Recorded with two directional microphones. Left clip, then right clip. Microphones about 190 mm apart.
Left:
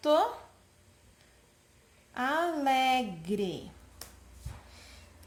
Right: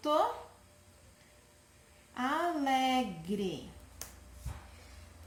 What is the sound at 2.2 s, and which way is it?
A woman's voice, 60° left (ahead or behind).